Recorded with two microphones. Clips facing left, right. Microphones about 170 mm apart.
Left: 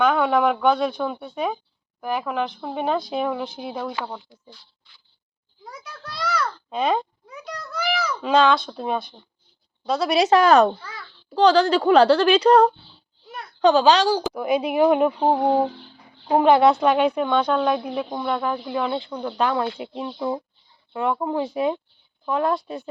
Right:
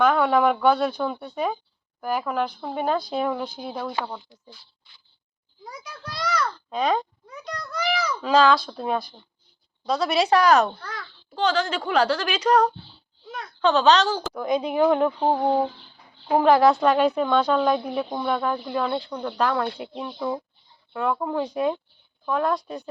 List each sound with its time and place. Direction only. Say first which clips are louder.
0.0 s a woman's voice: even; centre (ahead or behind)
5.6 s a child's voice: even; centre (ahead or behind); by 10.8 s 30° left (ahead or behind)
10.8 s a child's voice: right 3 dB; 5° left (ahead or behind)
11.3 s speech: left 7 dB; 35° left (ahead or behind)
13.6 s a woman's voice: left 2 dB; 15° left (ahead or behind)
16.5 s a woman's voice: left 1 dB; centre (ahead or behind)
19.4 s speech: left 1 dB; 20° left (ahead or behind)